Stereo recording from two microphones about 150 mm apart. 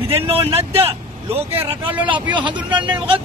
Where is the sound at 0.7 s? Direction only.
40° right (ahead or behind).